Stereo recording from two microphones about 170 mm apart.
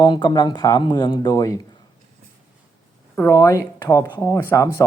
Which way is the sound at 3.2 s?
15° left (ahead or behind).